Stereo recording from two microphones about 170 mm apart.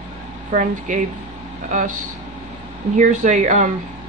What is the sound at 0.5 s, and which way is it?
Speech, 50° right (ahead or behind).